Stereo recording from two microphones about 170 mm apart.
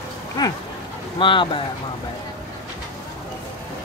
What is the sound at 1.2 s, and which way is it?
Speech, 30° left (ahead or behind).